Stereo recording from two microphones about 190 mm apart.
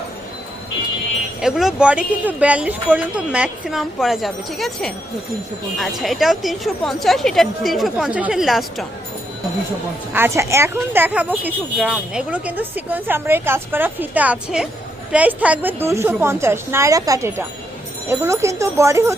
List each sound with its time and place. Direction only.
1.4 s speech: centre (ahead or behind)
6.0 s speech: centre (ahead or behind)
10.1 s a woman's voice: 10° right (ahead or behind)